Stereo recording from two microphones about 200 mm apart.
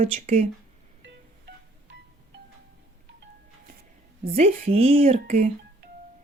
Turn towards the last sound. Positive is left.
turn(degrees=-35)  # may be behind; listen again after turning